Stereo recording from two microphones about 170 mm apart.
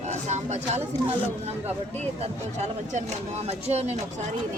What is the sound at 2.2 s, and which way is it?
Speech, 40° right (ahead or behind).